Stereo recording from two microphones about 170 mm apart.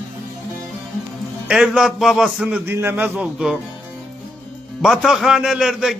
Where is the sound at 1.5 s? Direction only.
5° right (ahead or behind).